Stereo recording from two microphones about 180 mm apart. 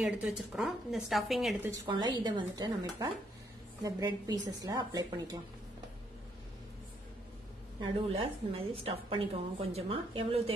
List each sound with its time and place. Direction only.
0.0 s a woman's voice: centre (ahead or behind)
1.9 s a woman's voice: 25° right (ahead or behind)
7.8 s a woman's voice: 30° right (ahead or behind)